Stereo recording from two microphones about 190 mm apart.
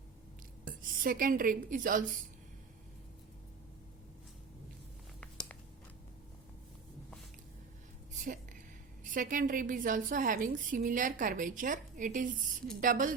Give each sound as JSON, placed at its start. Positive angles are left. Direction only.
{"t": 0.6, "sound": "a woman's voice", "side_deg": -50}
{"t": 8.1, "sound": "a sound", "side_deg": -40}
{"t": 9.0, "sound": "a woman's voice", "side_deg": -45}